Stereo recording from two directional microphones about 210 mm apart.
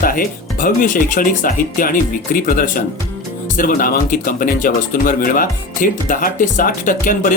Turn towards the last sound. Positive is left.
turn(degrees=40)  # may be behind; listen again after turning